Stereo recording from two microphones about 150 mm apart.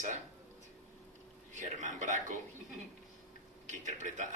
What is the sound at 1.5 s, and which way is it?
Speech, 55° right (ahead or behind).